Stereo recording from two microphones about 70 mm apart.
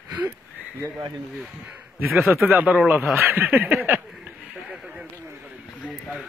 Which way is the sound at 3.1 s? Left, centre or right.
Right.